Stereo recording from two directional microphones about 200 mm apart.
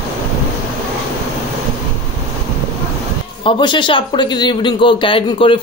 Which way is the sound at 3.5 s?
25° left (ahead or behind).